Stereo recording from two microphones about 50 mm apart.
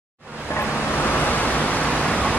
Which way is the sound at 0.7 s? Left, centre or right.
Left.